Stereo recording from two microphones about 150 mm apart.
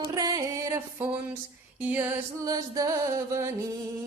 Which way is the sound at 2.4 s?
25° right (ahead or behind).